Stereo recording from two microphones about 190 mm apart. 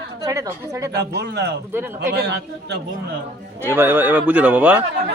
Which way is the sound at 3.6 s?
10° right (ahead or behind).